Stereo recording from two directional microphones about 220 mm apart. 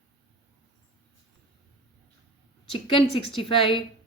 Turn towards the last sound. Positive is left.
turn(degrees=25)  # may be behind; listen again after turning